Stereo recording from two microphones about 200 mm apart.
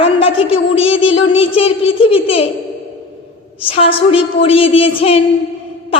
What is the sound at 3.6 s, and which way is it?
A woman's voice, 30° left (ahead or behind).